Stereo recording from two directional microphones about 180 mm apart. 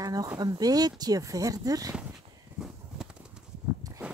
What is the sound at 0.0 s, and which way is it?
Speech, 20° right (ahead or behind).